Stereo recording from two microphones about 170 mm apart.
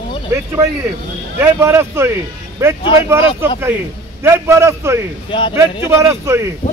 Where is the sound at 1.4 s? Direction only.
15° right (ahead or behind).